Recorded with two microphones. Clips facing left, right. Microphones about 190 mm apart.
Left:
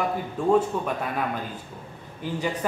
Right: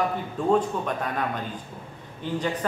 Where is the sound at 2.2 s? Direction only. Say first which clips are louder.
Even; 10° left (ahead or behind).